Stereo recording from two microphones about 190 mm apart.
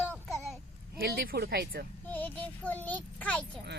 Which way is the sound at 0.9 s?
55° right (ahead or behind).